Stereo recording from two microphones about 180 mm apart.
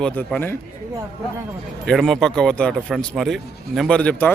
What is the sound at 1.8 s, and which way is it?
Speech, centre (ahead or behind).